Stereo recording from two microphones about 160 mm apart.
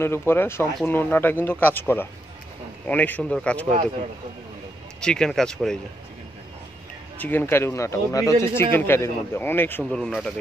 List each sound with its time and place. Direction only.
0.0 s speech: 15° left (ahead or behind)
5.0 s speech: 5° left (ahead or behind)
7.2 s speech: 10° left (ahead or behind)